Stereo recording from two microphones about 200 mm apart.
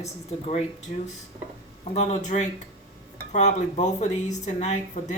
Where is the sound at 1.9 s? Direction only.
35° left (ahead or behind).